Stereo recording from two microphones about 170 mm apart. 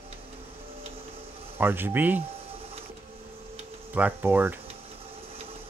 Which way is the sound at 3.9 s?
10° right (ahead or behind).